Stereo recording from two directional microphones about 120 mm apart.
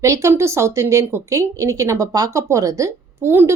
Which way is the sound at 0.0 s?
25° right (ahead or behind).